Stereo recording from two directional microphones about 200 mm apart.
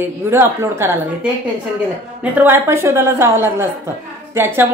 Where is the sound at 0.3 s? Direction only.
10° right (ahead or behind).